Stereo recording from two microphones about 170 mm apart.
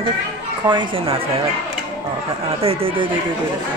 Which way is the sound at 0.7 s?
30° right (ahead or behind).